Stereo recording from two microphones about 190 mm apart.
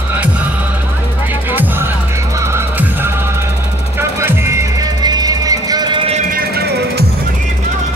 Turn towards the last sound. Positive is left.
turn(degrees=-55)  # may be behind; listen again after turning